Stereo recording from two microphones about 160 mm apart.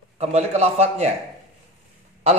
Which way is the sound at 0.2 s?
45° right (ahead or behind).